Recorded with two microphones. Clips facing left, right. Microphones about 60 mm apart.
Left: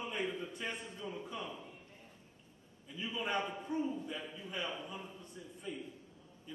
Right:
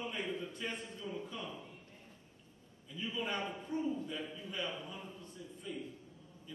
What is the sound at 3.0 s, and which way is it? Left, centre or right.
A man's voice, centre.